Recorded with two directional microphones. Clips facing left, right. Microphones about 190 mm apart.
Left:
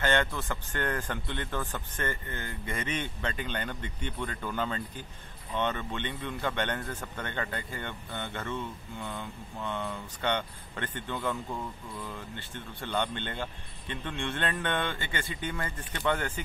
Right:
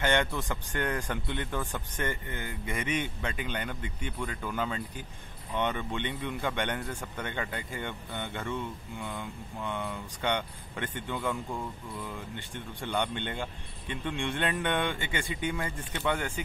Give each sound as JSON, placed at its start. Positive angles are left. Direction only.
{"t": 0.0, "sound": "speech", "side_deg": -15}